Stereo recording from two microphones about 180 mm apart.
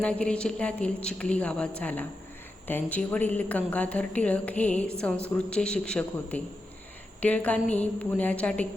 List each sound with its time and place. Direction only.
0.0 s speech: 5° left (ahead or behind)